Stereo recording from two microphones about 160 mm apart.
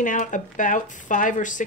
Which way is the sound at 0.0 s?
55° left (ahead or behind).